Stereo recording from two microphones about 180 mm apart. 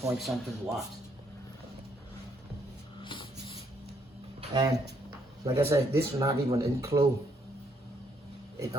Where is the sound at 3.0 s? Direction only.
30° left (ahead or behind).